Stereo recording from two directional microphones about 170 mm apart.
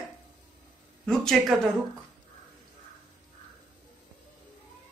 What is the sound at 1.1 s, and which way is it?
Speech, 5° left (ahead or behind).